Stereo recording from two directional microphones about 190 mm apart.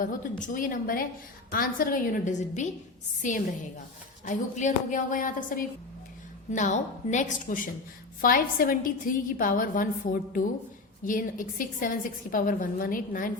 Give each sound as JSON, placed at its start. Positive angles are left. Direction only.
{"t": 0.0, "sound": "a woman's voice", "side_deg": 45}
{"t": 4.3, "sound": "a woman's voice", "side_deg": 40}